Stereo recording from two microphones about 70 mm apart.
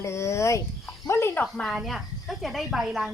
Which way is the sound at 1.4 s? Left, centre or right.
Centre.